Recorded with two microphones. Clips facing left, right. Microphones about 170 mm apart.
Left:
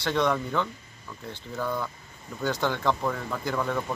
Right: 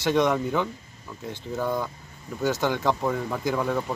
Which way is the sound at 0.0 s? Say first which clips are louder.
Right 3 dB; 15° right (ahead or behind).